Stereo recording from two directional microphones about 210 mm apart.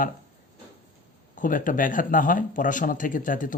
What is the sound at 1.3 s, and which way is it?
Speech, 40° left (ahead or behind).